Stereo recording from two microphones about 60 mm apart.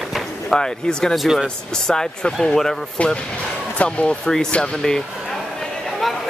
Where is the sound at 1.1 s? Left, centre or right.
Centre.